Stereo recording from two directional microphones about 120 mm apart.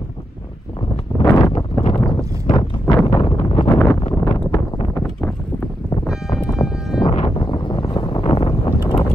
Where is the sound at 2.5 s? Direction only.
90° left.